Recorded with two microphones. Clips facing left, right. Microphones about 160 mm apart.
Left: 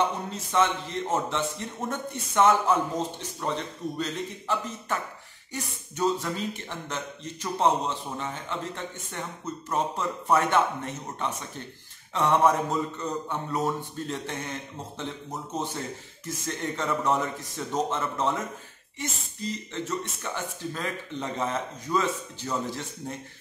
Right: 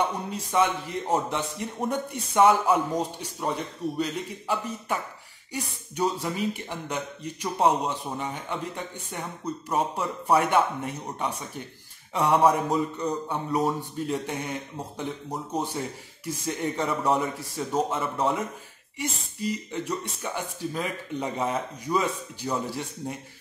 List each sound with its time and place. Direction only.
0.3 s speech: 10° right (ahead or behind)
19.4 s speech: 10° right (ahead or behind)